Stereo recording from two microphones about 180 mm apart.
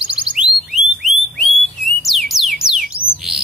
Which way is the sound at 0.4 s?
5° right (ahead or behind).